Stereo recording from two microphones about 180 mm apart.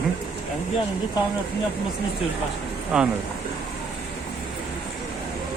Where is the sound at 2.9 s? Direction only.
5° right (ahead or behind).